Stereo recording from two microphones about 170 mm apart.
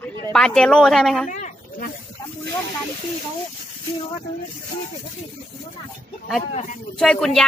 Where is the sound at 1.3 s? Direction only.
50° left (ahead or behind).